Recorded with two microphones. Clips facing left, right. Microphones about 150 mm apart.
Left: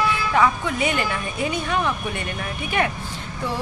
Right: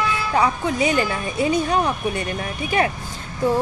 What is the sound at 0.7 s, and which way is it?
Speech, 35° right (ahead or behind).